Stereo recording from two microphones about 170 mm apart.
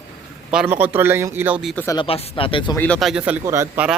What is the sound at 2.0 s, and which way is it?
Speech, 35° left (ahead or behind).